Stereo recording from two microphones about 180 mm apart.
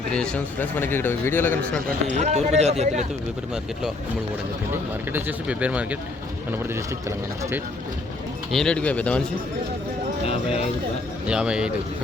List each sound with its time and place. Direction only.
0.1 s a man's voice: 5° left (ahead or behind)
2.0 s speech: 40° right (ahead or behind)
4.7 s speech: 10° right (ahead or behind)
8.5 s a man's voice: 5° left (ahead or behind)
11.3 s speech: 5° right (ahead or behind)